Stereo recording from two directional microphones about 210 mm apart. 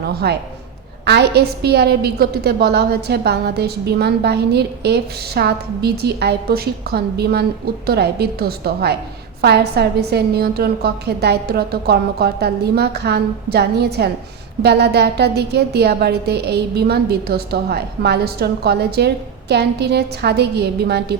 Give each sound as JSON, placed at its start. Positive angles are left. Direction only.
{"t": 0.1, "sound": "a woman's voice", "side_deg": -50}